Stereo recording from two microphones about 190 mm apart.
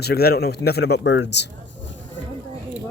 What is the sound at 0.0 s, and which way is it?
Speech, 55° left (ahead or behind).